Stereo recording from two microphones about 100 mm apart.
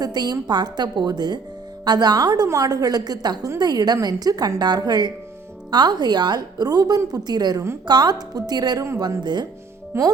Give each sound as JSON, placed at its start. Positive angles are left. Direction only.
{"t": 0.0, "sound": "a woman's voice", "side_deg": -40}
{"t": 9.9, "sound": "music", "side_deg": -25}